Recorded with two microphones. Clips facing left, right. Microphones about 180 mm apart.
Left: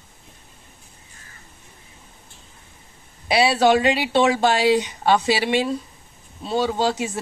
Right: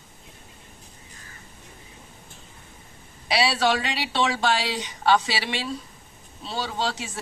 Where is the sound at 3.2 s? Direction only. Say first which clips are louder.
Left 6 dB; 50° left (ahead or behind).